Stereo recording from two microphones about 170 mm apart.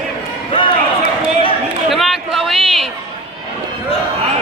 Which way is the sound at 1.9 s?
Centre (ahead or behind).